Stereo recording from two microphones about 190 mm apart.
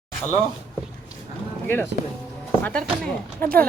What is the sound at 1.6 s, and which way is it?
Speech, 10° left (ahead or behind).